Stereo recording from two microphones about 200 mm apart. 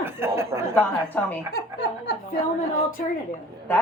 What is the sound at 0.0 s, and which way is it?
Chuckle, 10° right (ahead or behind).